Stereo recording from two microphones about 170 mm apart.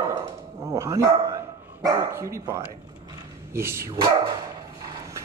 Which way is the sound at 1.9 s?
20° right (ahead or behind).